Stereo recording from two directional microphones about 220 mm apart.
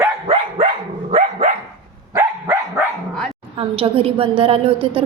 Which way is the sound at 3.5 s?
25° right (ahead or behind).